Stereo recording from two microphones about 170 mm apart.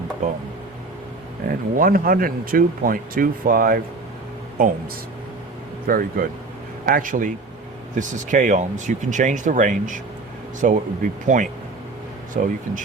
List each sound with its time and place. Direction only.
1.5 s speech: 55° right (ahead or behind)
5.9 s speech: 55° right (ahead or behind)